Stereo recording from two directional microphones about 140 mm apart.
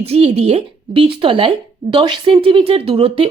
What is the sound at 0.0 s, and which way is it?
Speech, 45° right (ahead or behind).